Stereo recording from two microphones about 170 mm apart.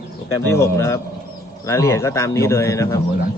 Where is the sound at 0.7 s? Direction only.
15° left (ahead or behind).